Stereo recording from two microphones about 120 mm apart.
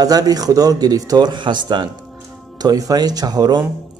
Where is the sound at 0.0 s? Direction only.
30° right (ahead or behind).